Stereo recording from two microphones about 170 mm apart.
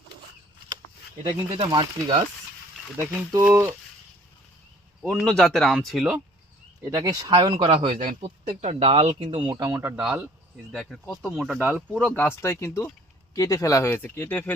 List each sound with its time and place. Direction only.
1.5 s speech: 30° right (ahead or behind)
3.3 s speech: 15° right (ahead or behind)
5.0 s speech: centre (ahead or behind)
6.8 s speech: 20° right (ahead or behind)
7.9 s speech: 50° right (ahead or behind)
8.4 s speech: 35° right (ahead or behind)
9.6 s speech: 15° right (ahead or behind)
9.9 s speech: 5° right (ahead or behind)
11.9 s speech: 10° left (ahead or behind)